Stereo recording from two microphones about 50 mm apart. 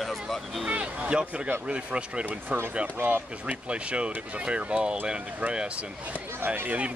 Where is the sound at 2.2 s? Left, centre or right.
Right.